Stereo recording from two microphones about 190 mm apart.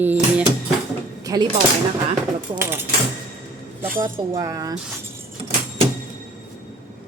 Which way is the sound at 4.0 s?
15° right (ahead or behind).